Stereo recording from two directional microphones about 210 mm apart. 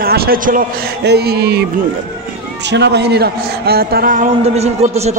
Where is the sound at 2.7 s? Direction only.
55° right (ahead or behind).